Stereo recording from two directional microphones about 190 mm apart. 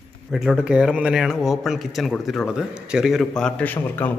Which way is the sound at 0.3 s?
Centre (ahead or behind).